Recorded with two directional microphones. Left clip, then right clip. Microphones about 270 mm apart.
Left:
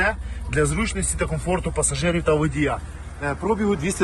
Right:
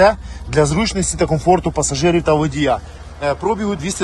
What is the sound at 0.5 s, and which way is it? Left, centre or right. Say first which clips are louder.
Speech: right 7 dB; centre.